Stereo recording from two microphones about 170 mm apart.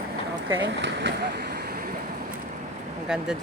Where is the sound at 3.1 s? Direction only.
5° right (ahead or behind).